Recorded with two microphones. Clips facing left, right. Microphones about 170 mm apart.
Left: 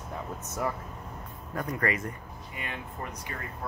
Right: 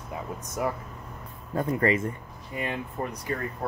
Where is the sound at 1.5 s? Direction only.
25° right (ahead or behind).